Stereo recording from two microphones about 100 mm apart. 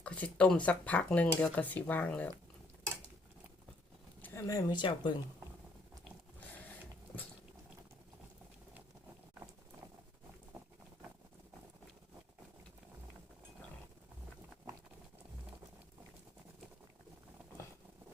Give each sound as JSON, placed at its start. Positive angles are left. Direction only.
{"t": 0.0, "sound": "speech", "side_deg": 15}
{"t": 4.4, "sound": "speech", "side_deg": 45}